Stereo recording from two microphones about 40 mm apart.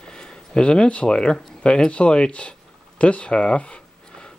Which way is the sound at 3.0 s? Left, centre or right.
Left.